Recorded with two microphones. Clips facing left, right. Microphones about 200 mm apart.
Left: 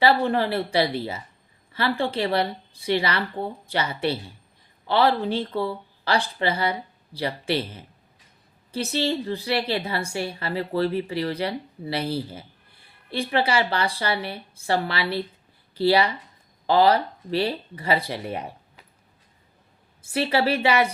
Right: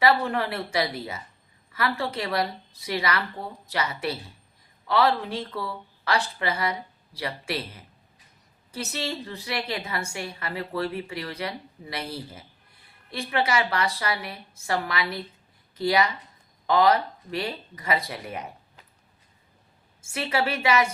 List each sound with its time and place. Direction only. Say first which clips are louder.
0.0 s a woman's voice: left 3 dB; 30° left (ahead or behind)
20.0 s a woman's voice: left 4 dB; 30° left (ahead or behind)